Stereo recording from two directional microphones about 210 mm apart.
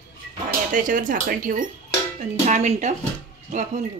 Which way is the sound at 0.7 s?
40° right (ahead or behind).